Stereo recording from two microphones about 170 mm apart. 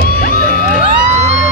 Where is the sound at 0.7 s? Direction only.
40° right (ahead or behind).